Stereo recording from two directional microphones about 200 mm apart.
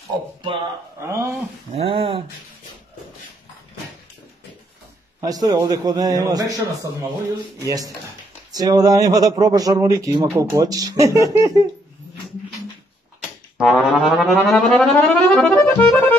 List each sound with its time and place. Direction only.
0.1 s speech: 20° right (ahead or behind)
1.8 s speech: 30° right (ahead or behind)
5.2 s speech: 20° right (ahead or behind)
13.6 s music: centre (ahead or behind)